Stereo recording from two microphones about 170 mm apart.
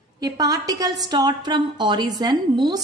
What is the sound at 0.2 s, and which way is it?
A woman's voice, 20° right (ahead or behind).